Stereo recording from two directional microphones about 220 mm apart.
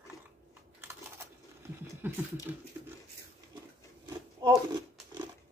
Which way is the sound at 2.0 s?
10° right (ahead or behind).